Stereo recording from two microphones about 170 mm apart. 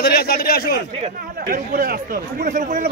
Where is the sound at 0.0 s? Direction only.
65° left (ahead or behind).